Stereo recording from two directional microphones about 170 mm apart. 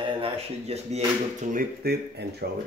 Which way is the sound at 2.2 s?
80° right.